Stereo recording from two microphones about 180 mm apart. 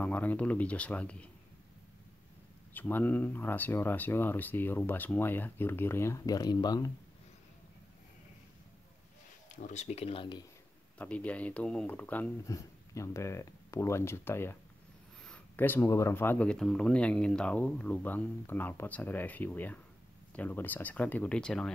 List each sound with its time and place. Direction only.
0.0 s speech: 10° left (ahead or behind)
2.7 s speech: 10° left (ahead or behind)
9.6 s speech: 40° left (ahead or behind)
11.0 s speech: 10° left (ahead or behind)